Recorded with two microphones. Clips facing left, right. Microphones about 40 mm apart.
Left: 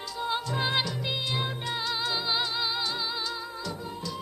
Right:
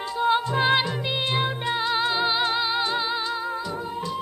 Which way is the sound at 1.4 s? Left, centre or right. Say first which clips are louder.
Right 7 dB; right.